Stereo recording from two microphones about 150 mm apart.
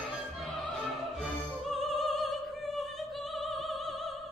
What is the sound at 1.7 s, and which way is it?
Opera, centre (ahead or behind).